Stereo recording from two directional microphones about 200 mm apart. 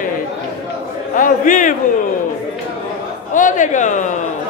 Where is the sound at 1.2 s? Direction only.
40° left (ahead or behind).